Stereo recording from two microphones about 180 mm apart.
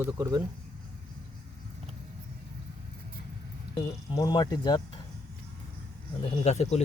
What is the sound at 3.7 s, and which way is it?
Speech, 25° left (ahead or behind).